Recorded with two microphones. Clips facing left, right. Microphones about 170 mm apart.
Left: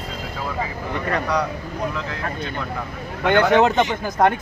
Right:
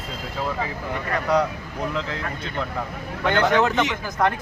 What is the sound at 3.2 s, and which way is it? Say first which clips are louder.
Speech: left 4 dB; 20° left (ahead or behind).